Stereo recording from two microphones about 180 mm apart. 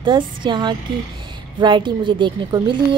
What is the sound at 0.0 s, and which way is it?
Speech, 25° right (ahead or behind).